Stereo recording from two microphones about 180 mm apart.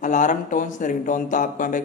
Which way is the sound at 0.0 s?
45° left (ahead or behind).